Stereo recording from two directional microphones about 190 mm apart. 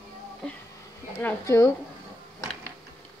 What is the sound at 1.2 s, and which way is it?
Speech, 15° left (ahead or behind).